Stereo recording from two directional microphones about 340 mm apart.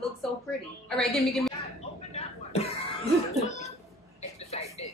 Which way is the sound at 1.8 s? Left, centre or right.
Centre.